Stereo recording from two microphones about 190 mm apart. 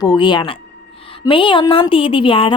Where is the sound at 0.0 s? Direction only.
25° left (ahead or behind).